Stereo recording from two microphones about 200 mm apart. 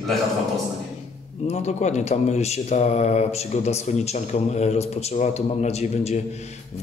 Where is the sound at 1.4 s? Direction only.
35° left (ahead or behind).